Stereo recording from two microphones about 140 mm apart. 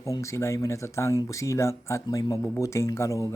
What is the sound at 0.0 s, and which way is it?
Speech, 20° left (ahead or behind).